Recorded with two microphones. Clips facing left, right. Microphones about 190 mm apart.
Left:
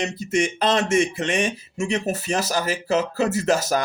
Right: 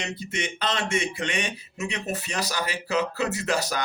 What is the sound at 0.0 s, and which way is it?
Speech, 45° left (ahead or behind).